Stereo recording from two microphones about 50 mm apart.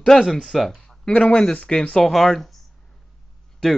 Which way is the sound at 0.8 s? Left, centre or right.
Centre.